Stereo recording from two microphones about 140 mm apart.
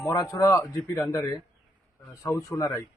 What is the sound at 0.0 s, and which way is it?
Speech, 25° left (ahead or behind).